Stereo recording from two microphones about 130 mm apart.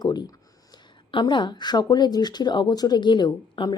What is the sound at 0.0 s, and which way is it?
Speech, 30° left (ahead or behind).